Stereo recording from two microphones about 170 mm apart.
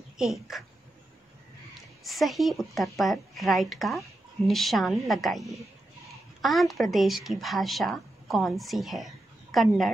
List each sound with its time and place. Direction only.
0.2 s speech: centre (ahead or behind)
2.0 s speech: centre (ahead or behind)
6.4 s speech: centre (ahead or behind)